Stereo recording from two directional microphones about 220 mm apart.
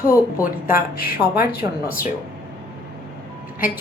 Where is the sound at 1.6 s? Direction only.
40° left (ahead or behind).